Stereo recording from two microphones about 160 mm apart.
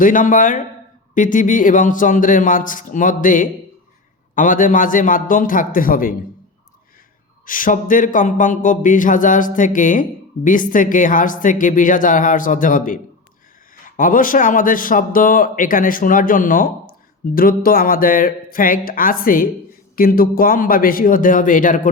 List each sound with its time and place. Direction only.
0.0 s speech: 55° left (ahead or behind)
7.4 s speech: 60° left (ahead or behind)